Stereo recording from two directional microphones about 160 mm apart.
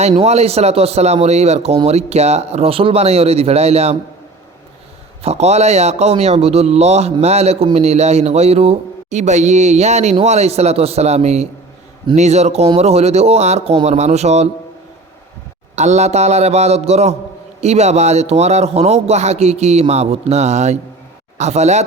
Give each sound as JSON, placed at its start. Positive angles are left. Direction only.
{"t": 0.1, "sound": "speech", "side_deg": -40}
{"t": 5.2, "sound": "a man's voice", "side_deg": -40}
{"t": 15.7, "sound": "a man's voice", "side_deg": -45}